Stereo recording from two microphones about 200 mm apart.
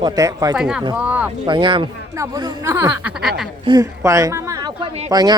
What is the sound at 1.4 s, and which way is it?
A woman's voice, 25° right (ahead or behind).